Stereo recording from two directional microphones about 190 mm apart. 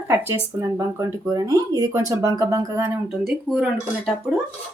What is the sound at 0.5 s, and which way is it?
Speech, 15° right (ahead or behind).